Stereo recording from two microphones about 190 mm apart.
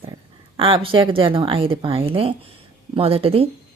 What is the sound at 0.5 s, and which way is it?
A woman's voice, 30° right (ahead or behind).